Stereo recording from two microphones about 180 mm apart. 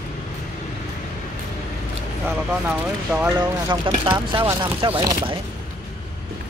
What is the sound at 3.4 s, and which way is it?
Speech, 25° right (ahead or behind).